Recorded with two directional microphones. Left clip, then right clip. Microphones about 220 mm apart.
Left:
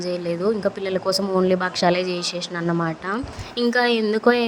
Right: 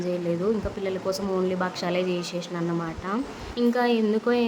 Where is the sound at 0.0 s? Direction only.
25° left (ahead or behind).